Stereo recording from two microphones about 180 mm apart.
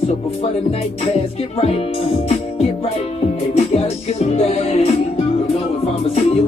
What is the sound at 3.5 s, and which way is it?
Music, 35° left (ahead or behind).